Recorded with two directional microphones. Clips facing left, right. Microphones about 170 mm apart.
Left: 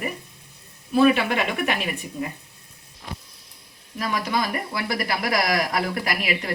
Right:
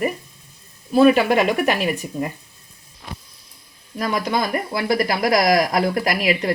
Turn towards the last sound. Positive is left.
turn(degrees=-40)  # may be behind; listen again after turning